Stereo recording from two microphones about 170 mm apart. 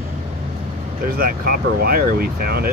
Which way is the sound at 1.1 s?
60° right (ahead or behind).